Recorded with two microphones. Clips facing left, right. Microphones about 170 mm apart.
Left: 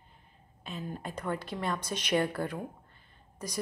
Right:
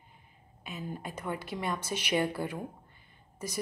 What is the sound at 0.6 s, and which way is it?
A woman's voice, 5° right (ahead or behind).